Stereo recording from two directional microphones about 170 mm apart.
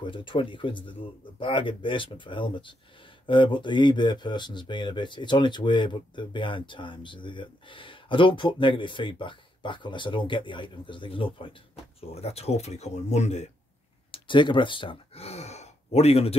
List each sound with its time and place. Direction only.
0.0 s speech: 30° left (ahead or behind)
14.1 s speech: 30° left (ahead or behind)